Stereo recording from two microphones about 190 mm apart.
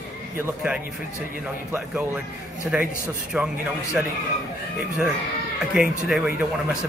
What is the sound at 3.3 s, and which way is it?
Speech, 5° right (ahead or behind).